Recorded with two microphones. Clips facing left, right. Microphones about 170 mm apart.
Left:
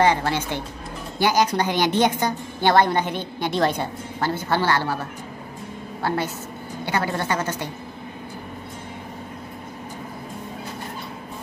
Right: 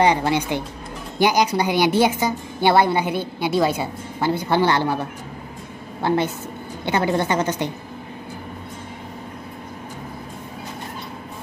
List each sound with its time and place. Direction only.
0.0 s a woman's voice: 15° right (ahead or behind)
6.0 s a woman's voice: 20° right (ahead or behind)